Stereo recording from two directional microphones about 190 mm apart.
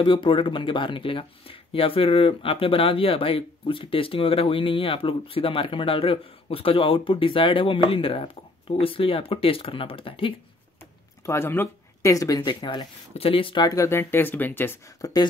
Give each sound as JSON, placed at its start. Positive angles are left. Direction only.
{"t": 0.0, "sound": "speech", "side_deg": 25}
{"t": 11.2, "sound": "speech", "side_deg": 15}